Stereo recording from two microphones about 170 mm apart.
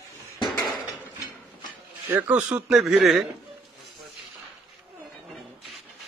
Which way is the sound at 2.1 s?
5° right (ahead or behind).